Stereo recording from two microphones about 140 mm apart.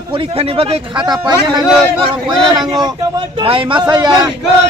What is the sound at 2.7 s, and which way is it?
Speech, 30° right (ahead or behind).